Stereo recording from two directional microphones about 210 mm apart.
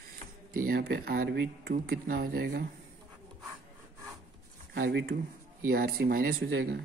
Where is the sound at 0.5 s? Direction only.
45° right (ahead or behind).